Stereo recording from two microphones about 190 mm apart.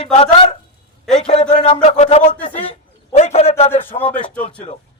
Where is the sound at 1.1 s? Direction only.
30° left (ahead or behind).